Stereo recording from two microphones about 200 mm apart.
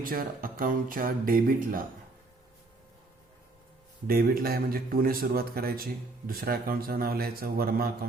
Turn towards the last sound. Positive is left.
turn(degrees=-50)  # may be behind; listen again after turning